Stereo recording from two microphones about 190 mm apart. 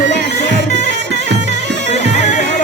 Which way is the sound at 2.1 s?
40° left (ahead or behind).